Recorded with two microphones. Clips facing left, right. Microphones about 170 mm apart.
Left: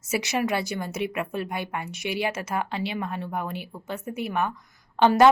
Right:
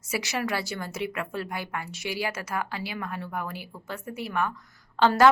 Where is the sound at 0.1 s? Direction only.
20° left (ahead or behind).